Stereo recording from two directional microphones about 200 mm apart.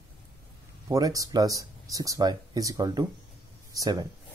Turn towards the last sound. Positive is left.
turn(degrees=-20)  # may be behind; listen again after turning